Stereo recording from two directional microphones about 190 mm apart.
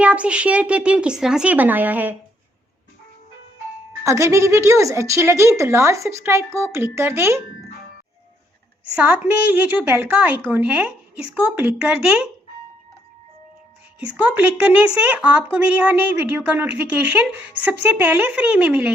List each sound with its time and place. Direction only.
0.0 s a woman's voice: 5° right (ahead or behind)
4.0 s a woman's voice: 15° right (ahead or behind)
9.0 s a woman's voice: 5° right (ahead or behind)
14.3 s a woman's voice: 10° right (ahead or behind)